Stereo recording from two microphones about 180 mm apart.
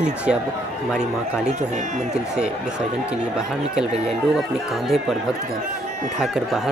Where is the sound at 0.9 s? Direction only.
5° right (ahead or behind).